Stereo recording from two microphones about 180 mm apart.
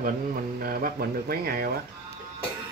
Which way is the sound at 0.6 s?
50° right (ahead or behind).